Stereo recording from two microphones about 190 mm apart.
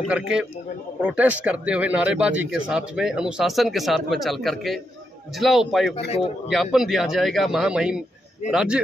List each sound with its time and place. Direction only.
0.1 s speech: 5° right (ahead or behind)
6.0 s a man's voice: 35° left (ahead or behind)
6.5 s speech: centre (ahead or behind)